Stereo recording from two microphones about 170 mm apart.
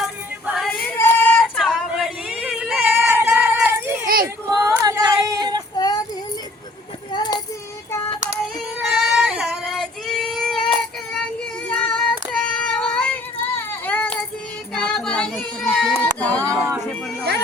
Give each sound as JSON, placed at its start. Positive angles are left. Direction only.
{"t": 0.0, "sound": "female singing", "side_deg": 0}
{"t": 0.9, "sound": "a sound", "side_deg": 10}
{"t": 4.0, "sound": "a sound", "side_deg": -60}
{"t": 4.6, "sound": "female singing", "side_deg": -20}
{"t": 5.7, "sound": "female singing", "side_deg": 25}
{"t": 7.1, "sound": "child singing", "side_deg": 25}
{"t": 8.8, "sound": "child singing", "side_deg": -5}
{"t": 13.6, "sound": "a sound", "side_deg": 10}
{"t": 14.8, "sound": "child singing", "side_deg": 5}